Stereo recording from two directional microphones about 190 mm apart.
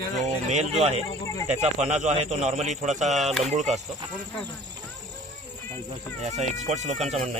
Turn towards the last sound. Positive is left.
turn(degrees=-35)  # may be behind; listen again after turning